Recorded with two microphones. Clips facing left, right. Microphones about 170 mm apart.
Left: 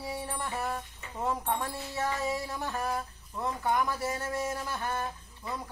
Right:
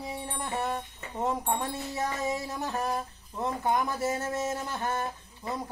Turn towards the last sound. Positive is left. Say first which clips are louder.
# right 3 dB
turn(degrees=-25)  # may be behind; listen again after turning